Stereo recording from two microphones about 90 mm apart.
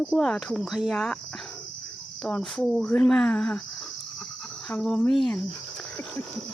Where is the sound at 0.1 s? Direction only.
5° left (ahead or behind).